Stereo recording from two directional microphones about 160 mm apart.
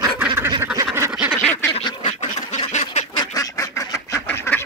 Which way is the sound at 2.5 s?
45° left (ahead or behind).